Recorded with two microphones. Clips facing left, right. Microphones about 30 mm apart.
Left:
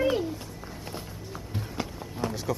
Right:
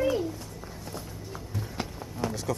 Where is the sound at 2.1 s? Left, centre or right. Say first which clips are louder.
Even; centre.